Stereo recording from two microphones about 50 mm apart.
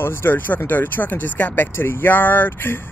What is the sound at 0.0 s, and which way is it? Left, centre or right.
Speech, left.